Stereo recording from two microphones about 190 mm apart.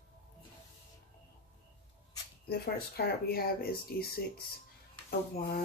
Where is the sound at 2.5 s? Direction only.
55° left (ahead or behind).